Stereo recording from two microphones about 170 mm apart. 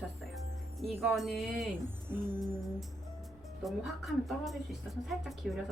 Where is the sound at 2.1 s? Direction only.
15° right (ahead or behind).